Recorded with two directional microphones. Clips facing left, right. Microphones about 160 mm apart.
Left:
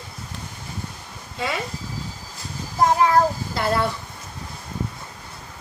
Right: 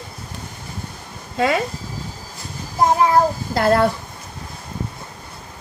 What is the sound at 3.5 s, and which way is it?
Speech, 45° right (ahead or behind).